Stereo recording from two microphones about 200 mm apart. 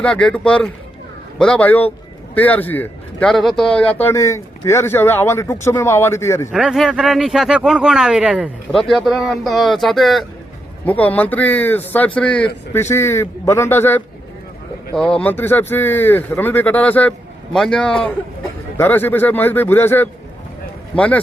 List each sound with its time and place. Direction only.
0.0 s speech: 5° left (ahead or behind)
6.5 s speech: centre (ahead or behind)